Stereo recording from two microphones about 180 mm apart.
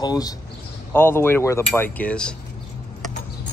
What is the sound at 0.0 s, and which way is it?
A man's voice, 20° left (ahead or behind).